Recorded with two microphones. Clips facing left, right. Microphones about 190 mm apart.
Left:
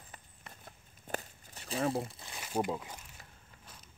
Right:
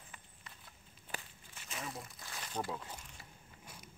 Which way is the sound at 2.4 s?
10° left (ahead or behind).